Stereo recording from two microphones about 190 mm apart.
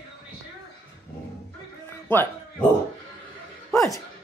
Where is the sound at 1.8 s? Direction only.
10° left (ahead or behind).